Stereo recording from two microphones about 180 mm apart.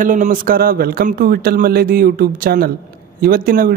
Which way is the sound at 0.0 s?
50° right (ahead or behind).